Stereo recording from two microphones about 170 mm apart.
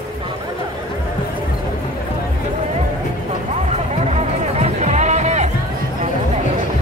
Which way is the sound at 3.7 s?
40° right (ahead or behind).